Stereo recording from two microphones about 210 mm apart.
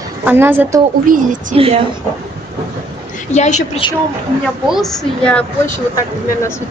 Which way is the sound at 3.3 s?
35° left (ahead or behind).